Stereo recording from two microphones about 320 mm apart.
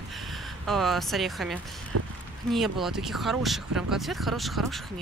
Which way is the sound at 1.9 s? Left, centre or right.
Right.